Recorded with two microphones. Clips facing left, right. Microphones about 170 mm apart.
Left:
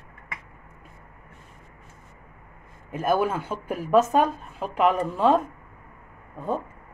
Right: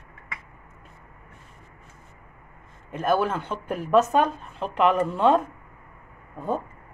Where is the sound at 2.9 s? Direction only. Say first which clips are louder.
Even; 10° left (ahead or behind).